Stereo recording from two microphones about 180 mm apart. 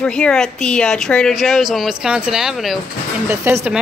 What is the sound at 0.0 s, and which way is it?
Speech, 5° left (ahead or behind).